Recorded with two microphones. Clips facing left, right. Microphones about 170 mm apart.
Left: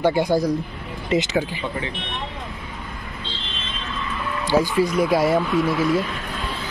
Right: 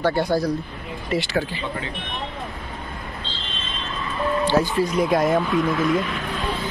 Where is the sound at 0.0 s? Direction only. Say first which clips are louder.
Left 2 dB; 15° left (ahead or behind).